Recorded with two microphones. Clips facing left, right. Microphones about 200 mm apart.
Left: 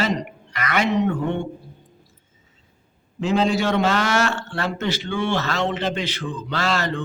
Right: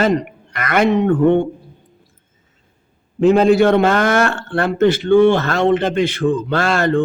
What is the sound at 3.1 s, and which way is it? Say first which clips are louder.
A man's voice: right 9 dB; 55° right (ahead or behind).